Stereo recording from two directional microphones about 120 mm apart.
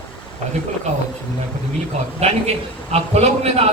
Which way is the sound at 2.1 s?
60° right (ahead or behind).